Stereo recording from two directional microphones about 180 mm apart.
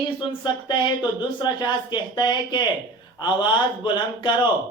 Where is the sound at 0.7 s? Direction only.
25° left (ahead or behind).